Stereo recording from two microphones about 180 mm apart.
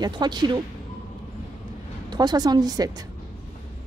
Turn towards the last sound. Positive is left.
turn(degrees=-20)  # may be behind; listen again after turning